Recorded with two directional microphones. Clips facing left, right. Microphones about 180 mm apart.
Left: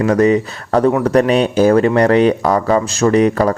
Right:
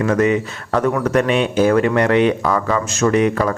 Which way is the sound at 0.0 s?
35° left (ahead or behind).